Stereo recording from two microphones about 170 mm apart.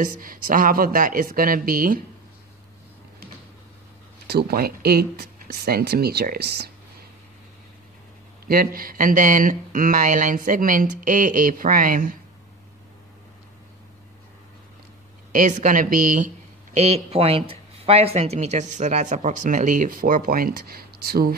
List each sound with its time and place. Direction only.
0.0 s speech: 55° right (ahead or behind)
4.3 s speech: 65° right (ahead or behind)
8.5 s speech: 60° right (ahead or behind)
15.3 s speech: 50° right (ahead or behind)
16.7 s speech: 40° right (ahead or behind); by 21.4 s 65° right (ahead or behind)